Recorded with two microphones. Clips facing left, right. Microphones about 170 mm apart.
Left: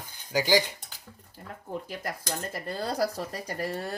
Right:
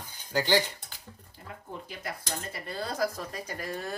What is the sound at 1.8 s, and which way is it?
Speech, 45° left (ahead or behind).